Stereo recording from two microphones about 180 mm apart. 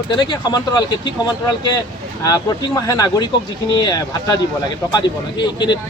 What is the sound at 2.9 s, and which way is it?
Speech, 20° left (ahead or behind).